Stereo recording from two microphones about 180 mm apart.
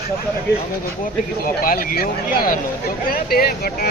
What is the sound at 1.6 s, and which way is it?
Speech, 55° left (ahead or behind).